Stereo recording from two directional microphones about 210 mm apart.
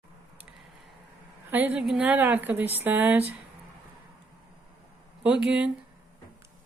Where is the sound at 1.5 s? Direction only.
10° right (ahead or behind).